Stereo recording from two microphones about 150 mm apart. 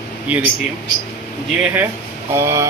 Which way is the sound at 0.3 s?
10° right (ahead or behind).